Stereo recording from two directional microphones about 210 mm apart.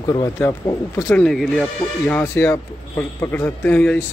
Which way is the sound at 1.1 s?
5° left (ahead or behind).